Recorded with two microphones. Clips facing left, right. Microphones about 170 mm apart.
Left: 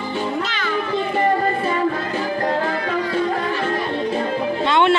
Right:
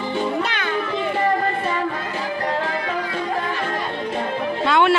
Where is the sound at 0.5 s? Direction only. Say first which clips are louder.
Even; 60° right (ahead or behind).